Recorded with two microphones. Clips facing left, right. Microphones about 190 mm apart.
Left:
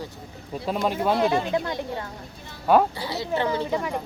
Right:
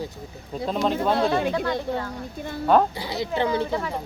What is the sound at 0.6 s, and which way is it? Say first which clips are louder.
Speech: right 1 dB; 10° left (ahead or behind).